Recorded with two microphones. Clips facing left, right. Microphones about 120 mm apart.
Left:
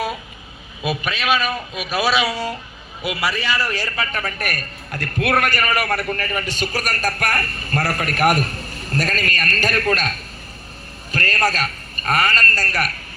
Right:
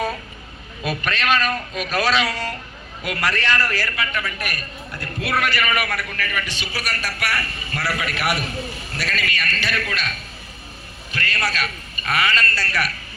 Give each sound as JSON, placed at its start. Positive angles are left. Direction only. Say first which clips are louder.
{"t": 0.8, "sound": "a man's voice", "louder": "left 1 dB", "side_deg": 10}
{"t": 3.9, "sound": "a man's voice", "louder": "left 1 dB", "side_deg": 35}
{"t": 11.1, "sound": "a man's voice", "louder": "left 5 dB", "side_deg": 40}